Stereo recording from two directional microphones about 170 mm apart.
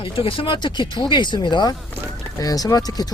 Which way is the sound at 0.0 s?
30° left (ahead or behind).